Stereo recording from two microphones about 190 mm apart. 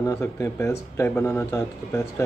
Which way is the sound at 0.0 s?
15° left (ahead or behind).